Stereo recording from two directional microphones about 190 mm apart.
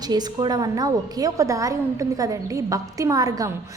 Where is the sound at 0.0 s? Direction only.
20° right (ahead or behind).